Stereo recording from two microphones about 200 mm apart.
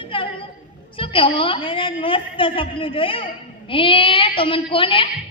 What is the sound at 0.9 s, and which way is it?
A man's voice, 25° left (ahead or behind).